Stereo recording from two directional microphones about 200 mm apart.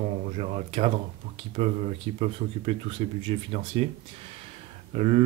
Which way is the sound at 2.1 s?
30° right (ahead or behind).